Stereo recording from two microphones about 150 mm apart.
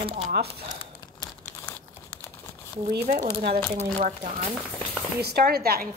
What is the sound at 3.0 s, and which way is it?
Speech, 60° right (ahead or behind).